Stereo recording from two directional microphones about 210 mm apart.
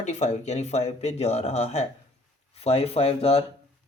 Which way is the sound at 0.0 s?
30° left (ahead or behind).